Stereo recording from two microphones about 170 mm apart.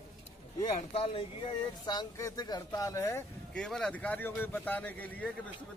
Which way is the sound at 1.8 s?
25° left (ahead or behind).